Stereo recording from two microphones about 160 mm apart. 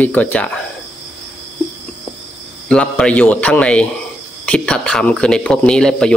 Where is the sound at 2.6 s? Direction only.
5° left (ahead or behind).